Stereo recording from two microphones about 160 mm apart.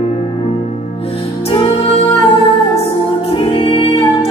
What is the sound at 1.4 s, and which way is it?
Music, 35° left (ahead or behind).